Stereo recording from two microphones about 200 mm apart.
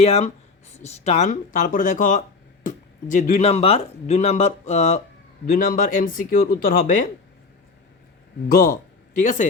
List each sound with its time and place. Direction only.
0.0 s speech: 30° left (ahead or behind)
8.4 s speech: 45° left (ahead or behind)